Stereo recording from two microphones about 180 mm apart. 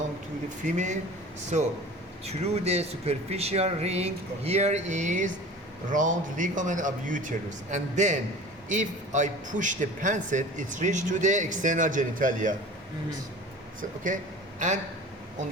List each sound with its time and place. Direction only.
0.6 s a man's voice: 40° right (ahead or behind)
14.6 s a man's voice: 45° right (ahead or behind)